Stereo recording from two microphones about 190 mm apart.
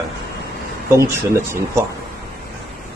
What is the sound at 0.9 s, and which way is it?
Speech, 15° right (ahead or behind).